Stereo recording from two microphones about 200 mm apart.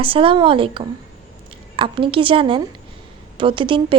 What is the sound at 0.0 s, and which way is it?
A woman's voice, 25° right (ahead or behind).